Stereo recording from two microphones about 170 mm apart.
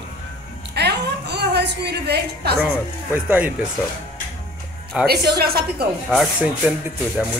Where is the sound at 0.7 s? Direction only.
80° right.